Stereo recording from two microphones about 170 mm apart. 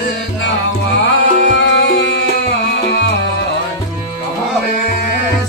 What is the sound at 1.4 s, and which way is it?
Music, 90° left.